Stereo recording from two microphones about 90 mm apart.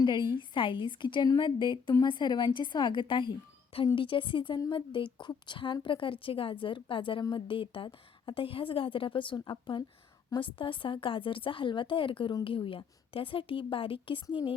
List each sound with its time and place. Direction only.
0.0 s a woman's voice: 60° left (ahead or behind)